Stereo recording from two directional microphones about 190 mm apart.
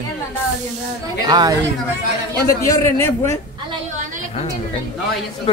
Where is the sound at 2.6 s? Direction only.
15° left (ahead or behind).